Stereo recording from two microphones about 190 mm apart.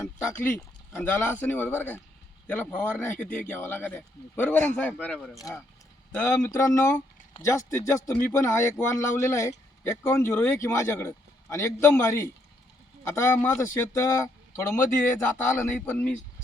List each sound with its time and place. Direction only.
0.0 s speech: 10° left (ahead or behind)
5.4 s speech: 20° left (ahead or behind)